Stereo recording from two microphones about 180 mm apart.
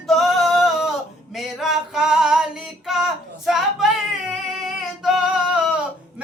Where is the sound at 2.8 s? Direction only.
Centre (ahead or behind).